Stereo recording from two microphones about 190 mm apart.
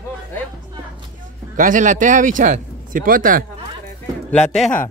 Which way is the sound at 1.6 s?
40° right (ahead or behind).